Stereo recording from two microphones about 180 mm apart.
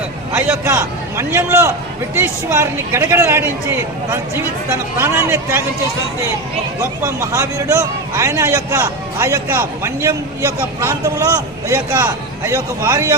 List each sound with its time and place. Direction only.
0.3 s a man's voice: 15° right (ahead or behind)
7.0 s a man's voice: 15° right (ahead or behind)